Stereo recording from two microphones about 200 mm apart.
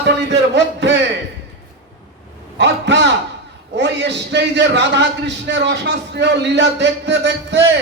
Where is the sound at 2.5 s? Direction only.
60° right (ahead or behind).